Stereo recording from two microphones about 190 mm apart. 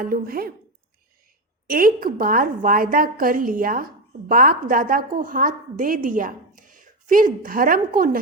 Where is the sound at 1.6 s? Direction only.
50° right (ahead or behind).